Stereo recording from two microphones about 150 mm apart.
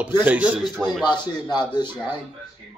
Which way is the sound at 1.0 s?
30° left (ahead or behind).